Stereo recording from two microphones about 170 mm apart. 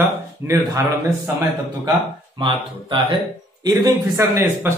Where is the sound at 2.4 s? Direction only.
25° right (ahead or behind).